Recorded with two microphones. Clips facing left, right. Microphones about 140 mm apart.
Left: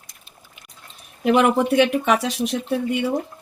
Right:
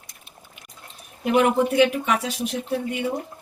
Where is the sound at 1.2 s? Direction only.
85° left.